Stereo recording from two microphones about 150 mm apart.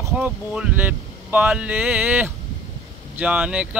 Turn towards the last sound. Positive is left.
turn(degrees=-10)  # may be behind; listen again after turning